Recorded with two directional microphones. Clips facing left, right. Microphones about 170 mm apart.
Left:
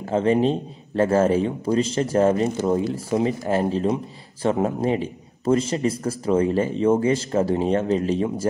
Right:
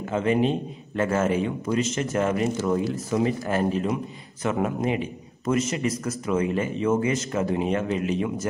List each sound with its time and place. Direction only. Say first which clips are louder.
0.1 s speech: left 3 dB; 35° left (ahead or behind)